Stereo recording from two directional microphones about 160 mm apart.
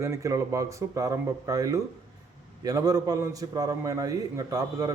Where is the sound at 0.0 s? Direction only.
20° right (ahead or behind).